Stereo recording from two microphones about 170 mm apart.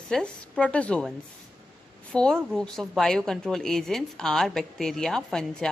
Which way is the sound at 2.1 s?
5° left (ahead or behind).